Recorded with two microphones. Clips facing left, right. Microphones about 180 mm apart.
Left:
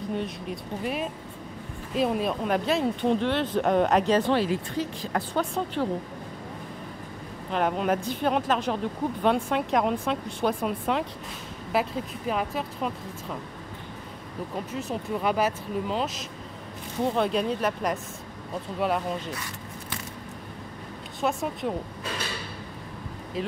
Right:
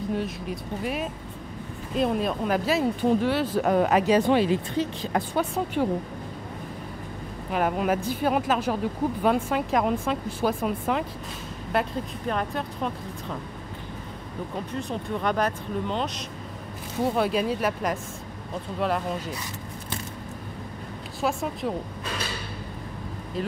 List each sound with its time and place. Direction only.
0.1 s speech: centre (ahead or behind); by 5.2 s 25° right (ahead or behind)
5.3 s speech: 10° right (ahead or behind)
7.5 s speech: 5° right (ahead or behind)
14.7 s speech: 5° left (ahead or behind)
21.2 s speech: centre (ahead or behind)